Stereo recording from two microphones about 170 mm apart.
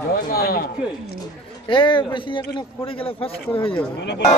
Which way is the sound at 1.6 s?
30° left (ahead or behind).